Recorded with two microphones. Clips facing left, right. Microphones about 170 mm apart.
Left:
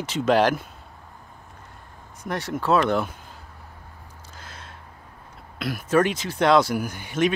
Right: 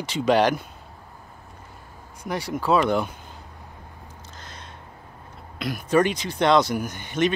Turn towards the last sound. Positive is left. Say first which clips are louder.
# even
turn(degrees=5)  # may be behind; listen again after turning